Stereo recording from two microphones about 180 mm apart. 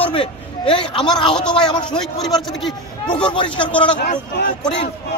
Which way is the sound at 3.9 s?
55° left (ahead or behind).